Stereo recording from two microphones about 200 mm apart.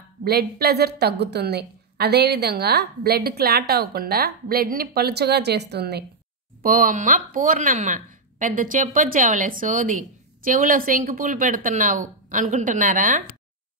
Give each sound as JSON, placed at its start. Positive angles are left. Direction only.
{"t": 0.2, "sound": "a woman's voice", "side_deg": -50}
{"t": 6.6, "sound": "speech", "side_deg": -45}